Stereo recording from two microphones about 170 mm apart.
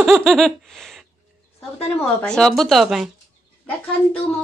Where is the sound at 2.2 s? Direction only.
5° left (ahead or behind).